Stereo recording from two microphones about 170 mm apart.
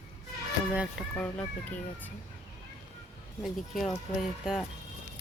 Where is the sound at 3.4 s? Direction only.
Centre (ahead or behind).